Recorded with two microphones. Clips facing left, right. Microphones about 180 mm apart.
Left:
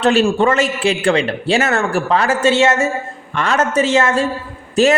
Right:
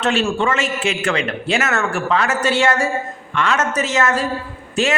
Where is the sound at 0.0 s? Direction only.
40° left (ahead or behind); by 2.9 s 25° left (ahead or behind).